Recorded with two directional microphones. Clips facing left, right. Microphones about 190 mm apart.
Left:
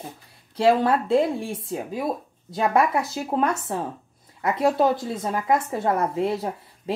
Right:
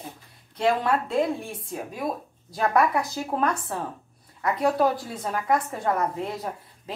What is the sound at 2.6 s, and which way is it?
Speech, 25° left (ahead or behind).